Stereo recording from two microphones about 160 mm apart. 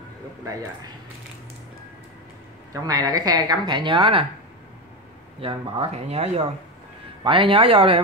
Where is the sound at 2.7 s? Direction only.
25° right (ahead or behind).